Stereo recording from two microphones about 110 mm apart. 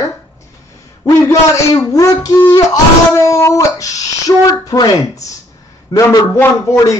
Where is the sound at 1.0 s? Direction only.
30° left (ahead or behind).